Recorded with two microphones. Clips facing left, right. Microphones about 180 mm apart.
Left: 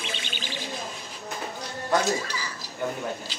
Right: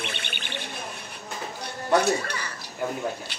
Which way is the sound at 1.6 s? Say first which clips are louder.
Right 3 dB; 65° right (ahead or behind).